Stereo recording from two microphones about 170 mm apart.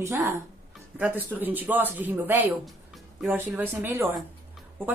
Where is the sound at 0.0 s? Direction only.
15° right (ahead or behind).